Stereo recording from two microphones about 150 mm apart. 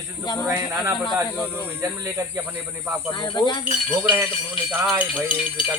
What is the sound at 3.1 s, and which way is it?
Cricket, 30° left (ahead or behind).